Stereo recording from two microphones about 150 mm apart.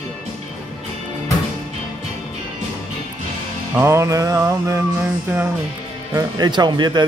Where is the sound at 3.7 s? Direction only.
20° right (ahead or behind).